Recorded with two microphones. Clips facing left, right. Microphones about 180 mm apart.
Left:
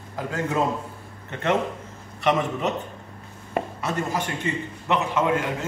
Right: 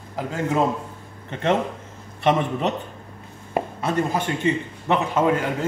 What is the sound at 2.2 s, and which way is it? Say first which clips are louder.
Speech: right 2 dB; 30° right (ahead or behind).